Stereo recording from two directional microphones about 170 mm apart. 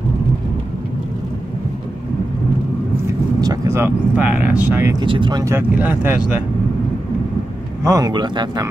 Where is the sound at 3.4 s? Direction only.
20° right (ahead or behind).